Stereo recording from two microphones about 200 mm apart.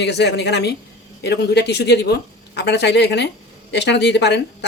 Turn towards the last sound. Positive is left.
turn(degrees=55)  # may be behind; listen again after turning